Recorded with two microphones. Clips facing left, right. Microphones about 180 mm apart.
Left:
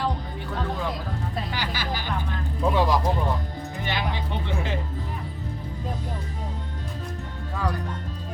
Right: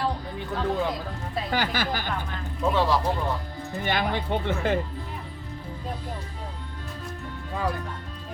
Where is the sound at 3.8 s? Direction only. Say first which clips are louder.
Right 3 dB; 50° right (ahead or behind).